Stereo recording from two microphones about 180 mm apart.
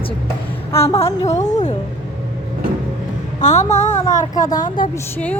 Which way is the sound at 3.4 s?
40° left (ahead or behind).